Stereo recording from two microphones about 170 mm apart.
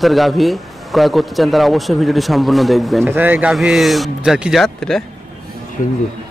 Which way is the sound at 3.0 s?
10° right (ahead or behind).